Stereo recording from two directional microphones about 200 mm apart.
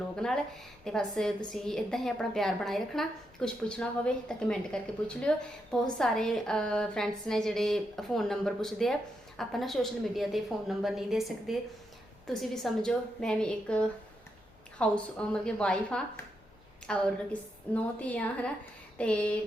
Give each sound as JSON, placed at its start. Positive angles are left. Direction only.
{"t": 0.2, "sound": "a woman's voice", "side_deg": 5}